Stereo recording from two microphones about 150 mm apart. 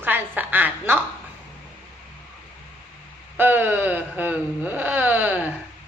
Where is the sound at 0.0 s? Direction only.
10° right (ahead or behind).